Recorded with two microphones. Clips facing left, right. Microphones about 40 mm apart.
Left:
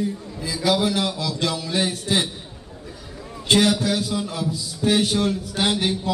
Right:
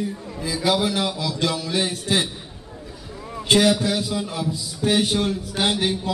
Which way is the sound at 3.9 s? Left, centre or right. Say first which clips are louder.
Even; centre.